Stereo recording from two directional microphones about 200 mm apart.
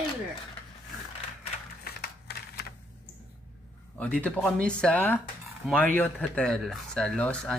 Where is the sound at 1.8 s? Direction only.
50° left (ahead or behind).